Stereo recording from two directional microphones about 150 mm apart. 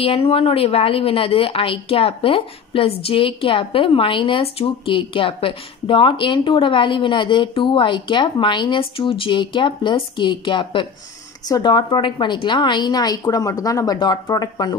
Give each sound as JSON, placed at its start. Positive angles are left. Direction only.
{"t": 0.0, "sound": "a woman's voice", "side_deg": 40}